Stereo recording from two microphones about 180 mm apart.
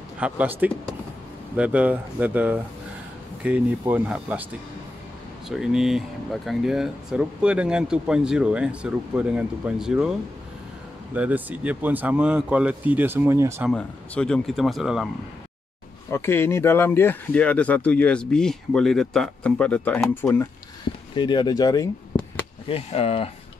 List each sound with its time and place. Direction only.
0.2 s speech: 10° right (ahead or behind)
5.6 s speech: 5° right (ahead or behind)
11.1 s speech: 10° right (ahead or behind)
13.7 s speech: 5° left (ahead or behind)
16.1 s speech: 15° left (ahead or behind)
21.1 s speech: 25° left (ahead or behind)
22.7 s speech: 35° left (ahead or behind)